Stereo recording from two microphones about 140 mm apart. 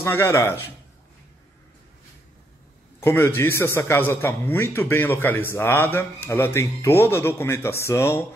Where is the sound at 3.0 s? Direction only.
15° left (ahead or behind).